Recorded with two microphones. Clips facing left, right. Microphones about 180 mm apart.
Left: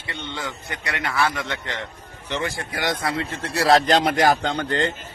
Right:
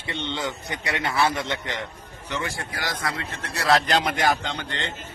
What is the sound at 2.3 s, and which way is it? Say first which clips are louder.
Speech: left 3 dB; 25° left (ahead or behind).